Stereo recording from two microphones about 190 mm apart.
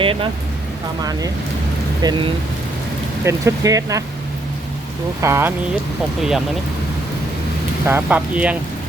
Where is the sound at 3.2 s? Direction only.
15° right (ahead or behind).